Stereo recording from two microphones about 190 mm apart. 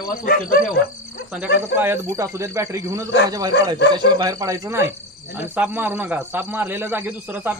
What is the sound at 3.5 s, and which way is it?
Speech, 65° left (ahead or behind).